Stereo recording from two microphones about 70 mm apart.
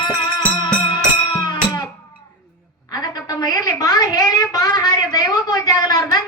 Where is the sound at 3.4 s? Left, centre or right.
Left.